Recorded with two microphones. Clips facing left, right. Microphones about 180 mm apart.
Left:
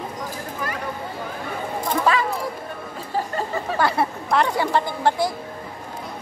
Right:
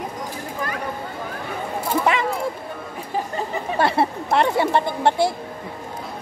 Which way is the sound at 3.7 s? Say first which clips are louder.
Right 2 dB; 25° right (ahead or behind).